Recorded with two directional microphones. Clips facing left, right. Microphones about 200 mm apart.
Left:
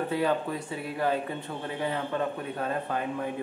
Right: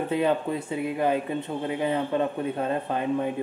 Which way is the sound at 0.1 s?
20° right (ahead or behind).